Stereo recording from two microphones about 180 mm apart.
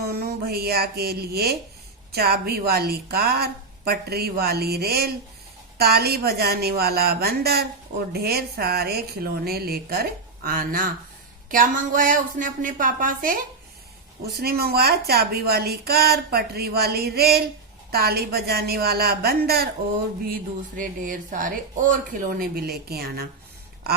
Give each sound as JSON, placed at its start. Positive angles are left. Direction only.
{"t": 0.0, "sound": "a woman's voice", "side_deg": -60}
{"t": 20.3, "sound": "speech", "side_deg": -50}